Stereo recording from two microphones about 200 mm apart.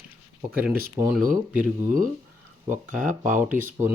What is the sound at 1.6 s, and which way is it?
Speech, 40° right (ahead or behind).